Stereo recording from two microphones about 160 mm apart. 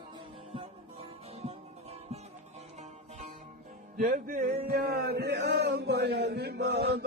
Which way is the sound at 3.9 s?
60° right (ahead or behind).